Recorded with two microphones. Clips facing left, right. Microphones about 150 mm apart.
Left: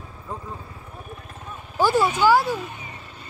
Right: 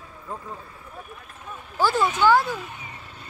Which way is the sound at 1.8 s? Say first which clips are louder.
Left 2 dB; 15° left (ahead or behind).